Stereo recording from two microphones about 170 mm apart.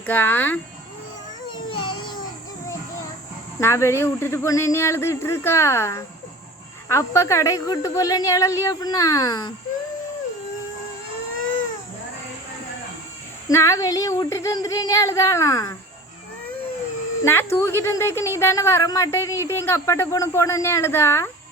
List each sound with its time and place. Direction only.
0.0 s a woman's voice: 10° left (ahead or behind)
1.5 s child singing: 30° left (ahead or behind)
3.6 s a woman's voice: 15° left (ahead or behind)
13.5 s a woman's voice: 15° left (ahead or behind)
17.2 s a woman's voice: 15° left (ahead or behind)